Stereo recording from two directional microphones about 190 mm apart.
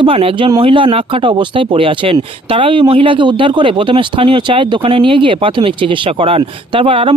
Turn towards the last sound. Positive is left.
turn(degrees=-30)  # may be behind; listen again after turning